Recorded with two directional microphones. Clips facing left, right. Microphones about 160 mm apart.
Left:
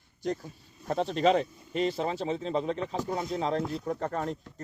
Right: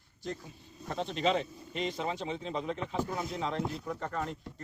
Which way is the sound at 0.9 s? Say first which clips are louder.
Left 6 dB; 40° left (ahead or behind).